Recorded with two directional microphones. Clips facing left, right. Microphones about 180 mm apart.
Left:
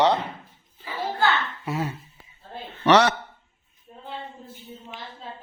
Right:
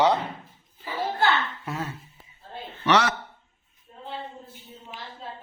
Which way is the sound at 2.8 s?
35° left (ahead or behind).